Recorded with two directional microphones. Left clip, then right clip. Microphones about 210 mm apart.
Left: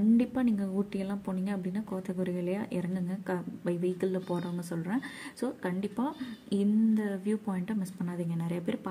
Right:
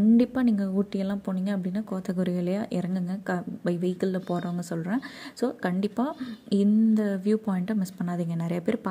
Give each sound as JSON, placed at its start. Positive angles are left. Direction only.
{"t": 0.2, "sound": "a woman's voice", "side_deg": -25}